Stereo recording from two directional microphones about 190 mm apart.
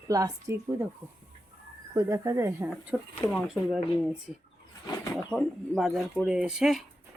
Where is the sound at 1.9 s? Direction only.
15° right (ahead or behind).